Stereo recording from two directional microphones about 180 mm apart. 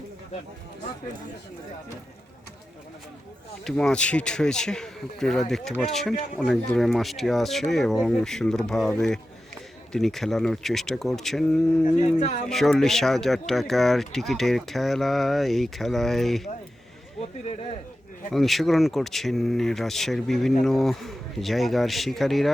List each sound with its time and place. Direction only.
3.6 s speech: centre (ahead or behind)
11.9 s a man's voice: 40° left (ahead or behind)
12.5 s speech: centre (ahead or behind)
17.2 s a man's voice: 35° left (ahead or behind)
18.3 s speech: centre (ahead or behind)